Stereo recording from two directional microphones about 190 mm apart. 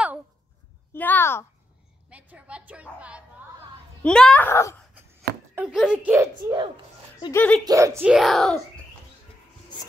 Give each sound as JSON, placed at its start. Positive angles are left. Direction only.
{"t": 0.9, "sound": "speech", "side_deg": 10}
{"t": 2.0, "sound": "a woman's voice", "side_deg": -5}
{"t": 4.0, "sound": "speech", "side_deg": 5}
{"t": 5.5, "sound": "speech", "side_deg": -5}
{"t": 6.1, "sound": "a child's voice", "side_deg": -20}
{"t": 7.3, "sound": "speech", "side_deg": 5}
{"t": 7.6, "sound": "speech", "side_deg": -15}
{"t": 8.0, "sound": "speech", "side_deg": 0}